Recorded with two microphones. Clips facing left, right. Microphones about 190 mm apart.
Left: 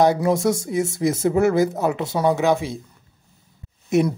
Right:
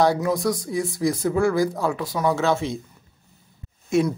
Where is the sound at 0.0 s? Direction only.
20° left (ahead or behind).